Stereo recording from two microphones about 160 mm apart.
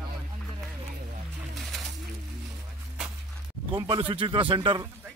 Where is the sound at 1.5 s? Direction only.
Centre (ahead or behind).